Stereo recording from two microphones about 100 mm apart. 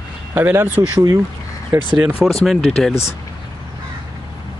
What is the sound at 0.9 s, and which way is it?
Speech, 35° right (ahead or behind).